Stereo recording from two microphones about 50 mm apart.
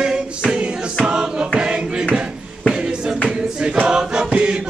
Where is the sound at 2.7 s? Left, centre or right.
Centre.